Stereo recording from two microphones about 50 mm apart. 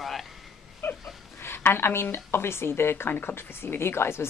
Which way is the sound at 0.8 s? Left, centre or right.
Left.